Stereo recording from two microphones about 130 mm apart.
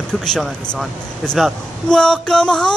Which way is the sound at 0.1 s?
5° left (ahead or behind).